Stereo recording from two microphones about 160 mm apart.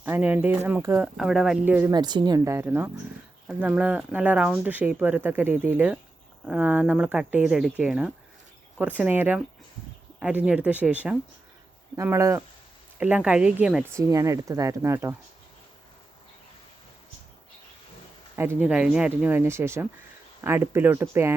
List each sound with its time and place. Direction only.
0.0 s speech: 10° right (ahead or behind)
1.0 s speech: centre (ahead or behind)
1.9 s speech: 25° right (ahead or behind); by 13.8 s 5° right (ahead or behind)
13.9 s speech: 20° right (ahead or behind)
18.3 s speech: 10° right (ahead or behind)